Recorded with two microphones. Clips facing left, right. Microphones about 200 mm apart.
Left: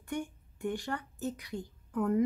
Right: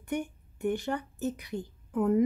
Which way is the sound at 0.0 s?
20° right (ahead or behind).